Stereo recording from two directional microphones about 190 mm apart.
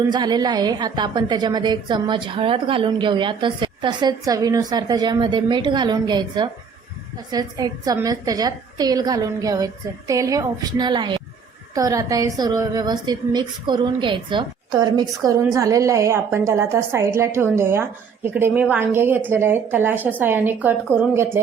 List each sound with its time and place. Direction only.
0.1 s a woman's voice: 20° right (ahead or behind)